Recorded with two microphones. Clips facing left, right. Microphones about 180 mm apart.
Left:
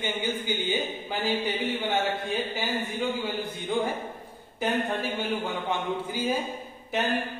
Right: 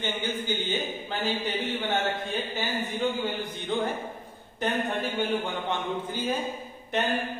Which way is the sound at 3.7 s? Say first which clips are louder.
Left 1 dB; 10° left (ahead or behind).